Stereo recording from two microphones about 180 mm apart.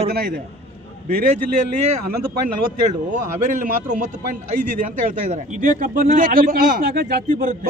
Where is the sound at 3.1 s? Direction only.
45° right (ahead or behind).